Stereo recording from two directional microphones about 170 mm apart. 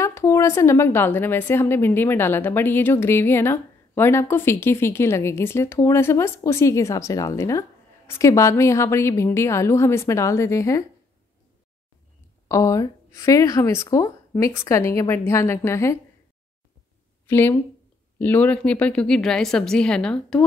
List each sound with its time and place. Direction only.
0.0 s speech: 15° left (ahead or behind)
12.4 s speech: 20° left (ahead or behind)
17.3 s a woman's voice: 10° left (ahead or behind)